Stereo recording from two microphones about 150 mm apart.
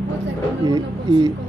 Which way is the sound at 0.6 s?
30° right (ahead or behind).